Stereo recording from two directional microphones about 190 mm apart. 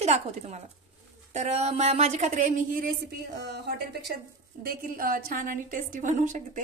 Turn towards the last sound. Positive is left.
turn(degrees=-40)  # may be behind; listen again after turning